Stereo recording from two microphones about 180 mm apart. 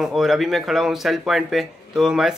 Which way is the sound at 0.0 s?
Centre (ahead or behind).